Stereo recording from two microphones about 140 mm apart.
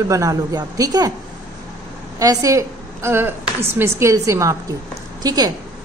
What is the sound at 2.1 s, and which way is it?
A woman's voice, 25° right (ahead or behind).